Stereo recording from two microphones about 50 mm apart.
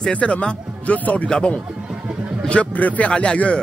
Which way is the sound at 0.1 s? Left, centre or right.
Left.